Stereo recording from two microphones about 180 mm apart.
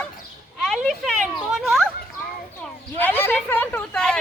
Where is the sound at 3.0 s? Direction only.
10° left (ahead or behind).